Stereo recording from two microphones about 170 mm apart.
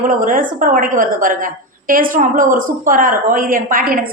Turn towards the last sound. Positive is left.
turn(degrees=-55)  # may be behind; listen again after turning